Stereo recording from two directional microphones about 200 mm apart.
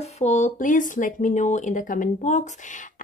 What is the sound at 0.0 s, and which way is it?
Speech, 35° left (ahead or behind).